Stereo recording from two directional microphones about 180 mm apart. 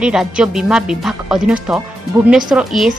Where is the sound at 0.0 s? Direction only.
5° right (ahead or behind).